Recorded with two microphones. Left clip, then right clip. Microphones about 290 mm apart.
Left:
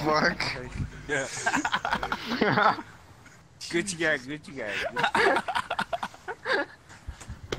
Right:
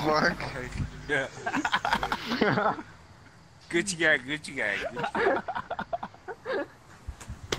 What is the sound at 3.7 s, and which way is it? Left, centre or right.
Speech, centre.